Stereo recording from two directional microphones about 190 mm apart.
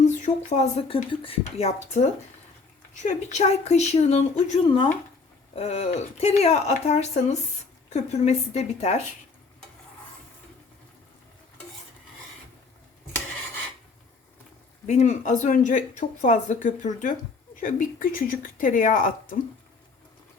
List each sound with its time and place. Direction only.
0.0 s speech: 35° left (ahead or behind)
4.6 s speech: 25° left (ahead or behind)
14.8 s speech: 40° left (ahead or behind)